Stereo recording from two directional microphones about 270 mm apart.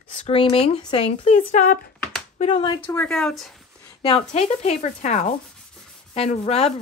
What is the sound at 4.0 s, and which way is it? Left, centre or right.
A woman's voice, left.